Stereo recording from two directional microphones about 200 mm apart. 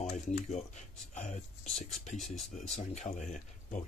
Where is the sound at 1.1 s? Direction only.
35° left (ahead or behind).